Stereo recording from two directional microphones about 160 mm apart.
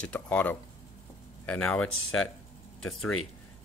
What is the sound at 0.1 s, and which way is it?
Speech, 10° left (ahead or behind).